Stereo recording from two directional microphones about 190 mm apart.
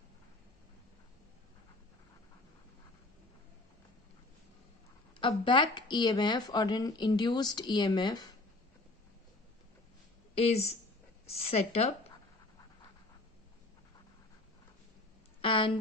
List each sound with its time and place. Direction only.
5.2 s speech: 25° left (ahead or behind)
10.3 s a woman's voice: 30° left (ahead or behind)
15.4 s speech: 25° left (ahead or behind)